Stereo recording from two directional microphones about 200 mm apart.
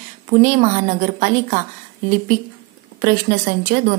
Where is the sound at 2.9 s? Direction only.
45° right (ahead or behind).